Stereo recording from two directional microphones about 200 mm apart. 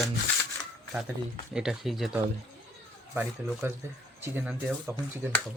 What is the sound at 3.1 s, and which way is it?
Speech, 10° right (ahead or behind).